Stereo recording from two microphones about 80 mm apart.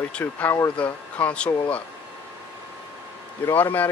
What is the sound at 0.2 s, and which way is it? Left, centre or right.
Speech, left.